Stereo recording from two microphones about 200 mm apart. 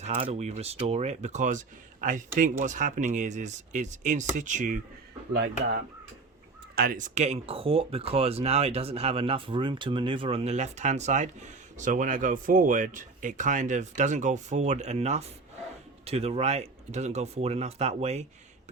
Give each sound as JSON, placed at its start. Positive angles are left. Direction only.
{"t": 0.0, "sound": "speech", "side_deg": -30}
{"t": 5.3, "sound": "speech", "side_deg": -60}
{"t": 6.7, "sound": "speech", "side_deg": -45}